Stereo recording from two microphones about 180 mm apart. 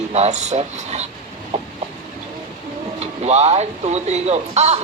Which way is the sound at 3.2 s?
35° right (ahead or behind).